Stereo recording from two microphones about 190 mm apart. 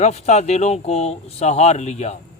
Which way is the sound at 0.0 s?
35° left (ahead or behind).